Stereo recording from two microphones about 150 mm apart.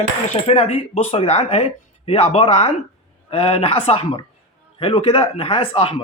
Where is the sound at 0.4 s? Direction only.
40° left (ahead or behind).